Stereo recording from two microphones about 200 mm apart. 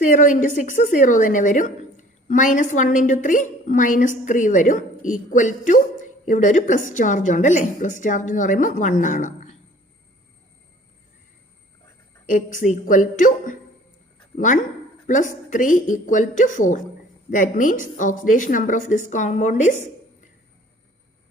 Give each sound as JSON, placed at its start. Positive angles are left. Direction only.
{"t": 0.0, "sound": "a woman's voice", "side_deg": 40}
{"t": 12.3, "sound": "a woman's voice", "side_deg": 40}